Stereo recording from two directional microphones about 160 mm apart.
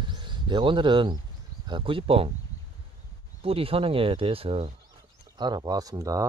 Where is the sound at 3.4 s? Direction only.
35° right (ahead or behind).